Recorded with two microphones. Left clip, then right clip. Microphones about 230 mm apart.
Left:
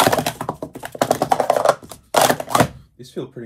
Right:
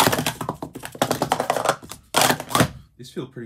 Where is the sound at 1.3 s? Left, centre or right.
Centre.